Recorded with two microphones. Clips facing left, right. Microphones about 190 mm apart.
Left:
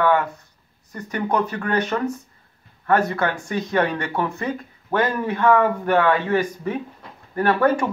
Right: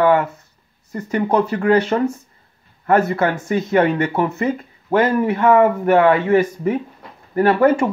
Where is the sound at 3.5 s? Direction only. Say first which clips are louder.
Right 7 dB; 25° right (ahead or behind).